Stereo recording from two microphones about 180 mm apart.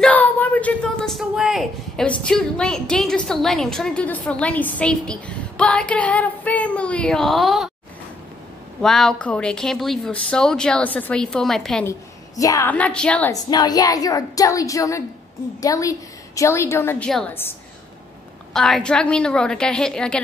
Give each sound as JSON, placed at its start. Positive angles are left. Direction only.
{"t": 0.0, "sound": "speech", "side_deg": 10}
{"t": 8.8, "sound": "speech", "side_deg": 0}
{"t": 12.4, "sound": "a woman's voice", "side_deg": 20}
{"t": 12.7, "sound": "a woman's voice", "side_deg": 5}
{"t": 13.3, "sound": "a woman's voice", "side_deg": 20}